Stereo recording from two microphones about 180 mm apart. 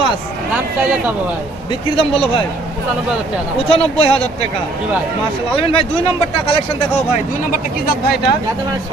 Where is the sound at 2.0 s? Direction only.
30° left (ahead or behind).